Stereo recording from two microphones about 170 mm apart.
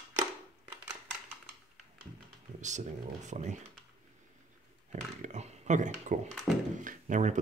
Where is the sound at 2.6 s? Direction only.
45° right (ahead or behind).